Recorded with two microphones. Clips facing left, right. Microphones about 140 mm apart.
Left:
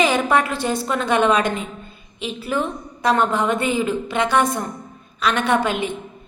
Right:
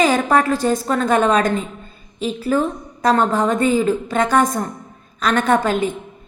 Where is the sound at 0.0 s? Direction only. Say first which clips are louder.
Right 2 dB; 40° right (ahead or behind).